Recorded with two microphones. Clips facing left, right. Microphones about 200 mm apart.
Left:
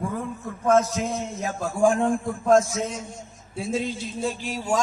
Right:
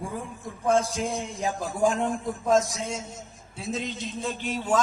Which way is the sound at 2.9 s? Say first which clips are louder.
Even; 10° right (ahead or behind).